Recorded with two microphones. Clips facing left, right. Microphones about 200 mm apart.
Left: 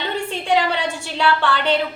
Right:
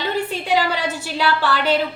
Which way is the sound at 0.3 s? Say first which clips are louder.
Left 1 dB; 5° right (ahead or behind).